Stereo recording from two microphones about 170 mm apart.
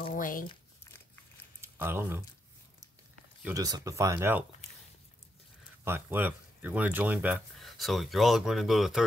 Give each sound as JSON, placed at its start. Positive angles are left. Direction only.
{"t": 0.1, "sound": "speech", "side_deg": 55}
{"t": 1.6, "sound": "speech", "side_deg": -15}
{"t": 3.5, "sound": "speech", "side_deg": -20}
{"t": 5.9, "sound": "speech", "side_deg": -10}